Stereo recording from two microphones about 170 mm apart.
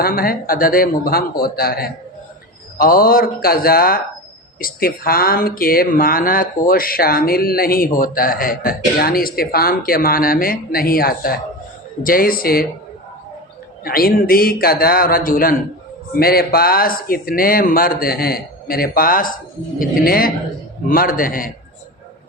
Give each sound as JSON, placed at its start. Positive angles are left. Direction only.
{"t": 0.0, "sound": "speech", "side_deg": 60}
{"t": 13.8, "sound": "speech", "side_deg": 60}